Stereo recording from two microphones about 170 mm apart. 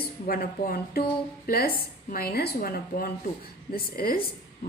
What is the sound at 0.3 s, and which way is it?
A woman's voice, 60° left (ahead or behind).